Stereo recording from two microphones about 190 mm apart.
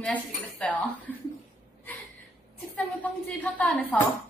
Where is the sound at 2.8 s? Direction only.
10° left (ahead or behind).